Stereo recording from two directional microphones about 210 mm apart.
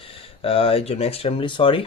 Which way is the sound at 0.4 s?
25° left (ahead or behind).